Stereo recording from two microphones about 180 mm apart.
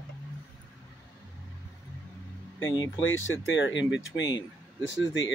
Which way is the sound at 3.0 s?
90° left.